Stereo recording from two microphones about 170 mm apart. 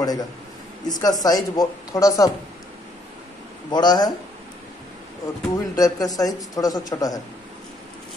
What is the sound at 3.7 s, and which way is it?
Speech, 25° left (ahead or behind).